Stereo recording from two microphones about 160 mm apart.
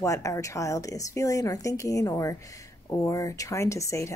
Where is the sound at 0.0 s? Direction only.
20° left (ahead or behind).